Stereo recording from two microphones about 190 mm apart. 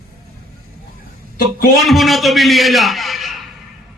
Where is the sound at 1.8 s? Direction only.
Centre (ahead or behind).